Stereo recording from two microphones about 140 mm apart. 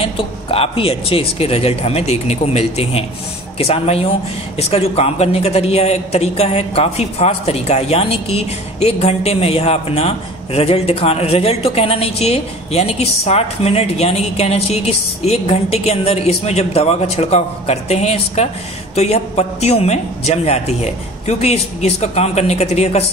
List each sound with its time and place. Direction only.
0.0 s a man's voice: 40° left (ahead or behind)